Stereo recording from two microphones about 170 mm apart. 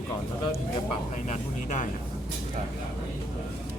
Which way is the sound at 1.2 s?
45° left (ahead or behind).